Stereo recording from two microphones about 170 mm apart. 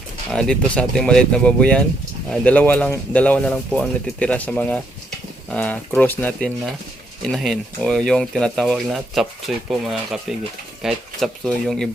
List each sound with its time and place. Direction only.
0.3 s speech: 5° left (ahead or behind)